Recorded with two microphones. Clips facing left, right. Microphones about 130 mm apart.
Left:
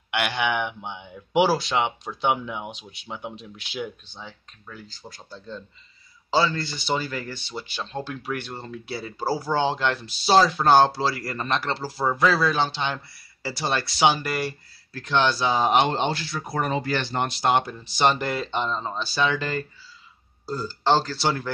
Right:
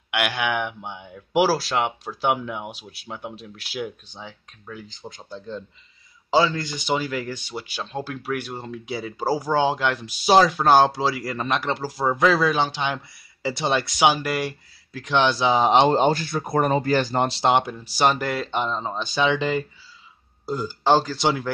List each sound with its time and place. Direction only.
0.1 s speech: 5° right (ahead or behind)
4.1 s speech: 15° right (ahead or behind)
15.7 s speech: 35° right (ahead or behind); by 17.7 s 20° right (ahead or behind)
17.7 s speech: 10° right (ahead or behind)